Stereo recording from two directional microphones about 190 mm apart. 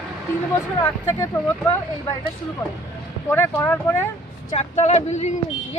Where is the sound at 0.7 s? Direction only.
15° left (ahead or behind).